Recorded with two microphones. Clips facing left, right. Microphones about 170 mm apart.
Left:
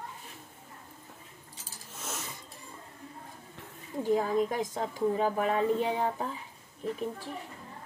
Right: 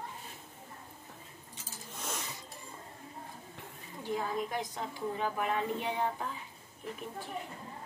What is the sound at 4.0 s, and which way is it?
A woman's voice, 40° left (ahead or behind).